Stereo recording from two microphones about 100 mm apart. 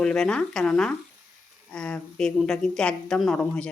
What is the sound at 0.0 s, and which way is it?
Speech, 10° left (ahead or behind).